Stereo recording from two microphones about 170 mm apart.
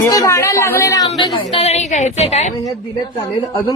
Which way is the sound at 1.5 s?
40° left (ahead or behind).